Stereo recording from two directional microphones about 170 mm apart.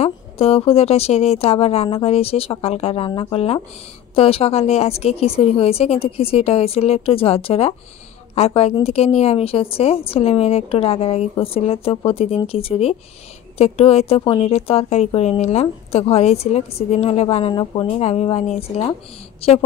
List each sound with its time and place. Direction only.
0.0 s a woman's voice: 35° left (ahead or behind)